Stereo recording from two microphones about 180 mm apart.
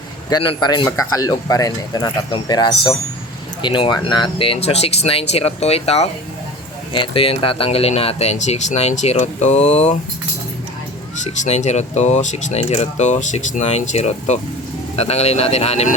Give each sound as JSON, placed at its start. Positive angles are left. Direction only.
{"t": 0.3, "sound": "speech", "side_deg": 20}
{"t": 11.2, "sound": "speech", "side_deg": 40}